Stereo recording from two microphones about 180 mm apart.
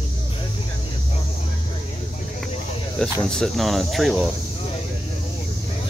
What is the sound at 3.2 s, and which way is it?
Speech, 5° left (ahead or behind).